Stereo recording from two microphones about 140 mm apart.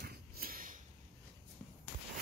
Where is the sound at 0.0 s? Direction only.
90° right.